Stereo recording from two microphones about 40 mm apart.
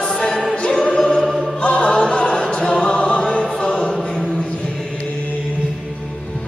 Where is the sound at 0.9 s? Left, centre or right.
Centre.